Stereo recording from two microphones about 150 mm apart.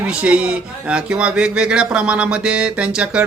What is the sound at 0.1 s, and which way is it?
Speech, 5° right (ahead or behind).